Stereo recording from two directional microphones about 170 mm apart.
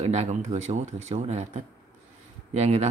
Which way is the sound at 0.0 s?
40° right (ahead or behind).